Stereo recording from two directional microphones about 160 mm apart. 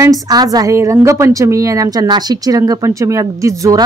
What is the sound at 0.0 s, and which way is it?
Speech, 25° right (ahead or behind).